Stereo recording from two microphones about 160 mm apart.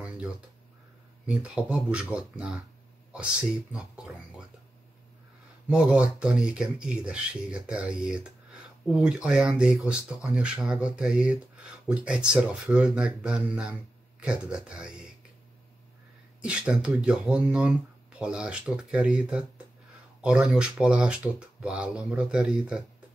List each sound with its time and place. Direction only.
1.2 s speech: 5° right (ahead or behind)
3.7 s a sound: 5° right (ahead or behind)
5.7 s speech: 5° right (ahead or behind)
16.4 s speech: 5° right (ahead or behind)